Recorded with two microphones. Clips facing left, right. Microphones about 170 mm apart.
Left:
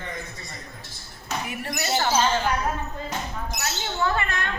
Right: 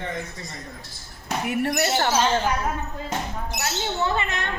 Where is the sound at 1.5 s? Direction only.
65° right (ahead or behind).